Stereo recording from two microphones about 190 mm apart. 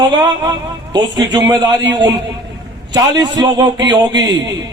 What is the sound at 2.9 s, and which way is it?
A man's voice, 20° right (ahead or behind).